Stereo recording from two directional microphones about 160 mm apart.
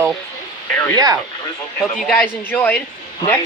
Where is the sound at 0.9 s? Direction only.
25° right (ahead or behind).